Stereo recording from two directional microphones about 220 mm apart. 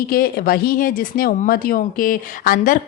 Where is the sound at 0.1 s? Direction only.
40° left (ahead or behind).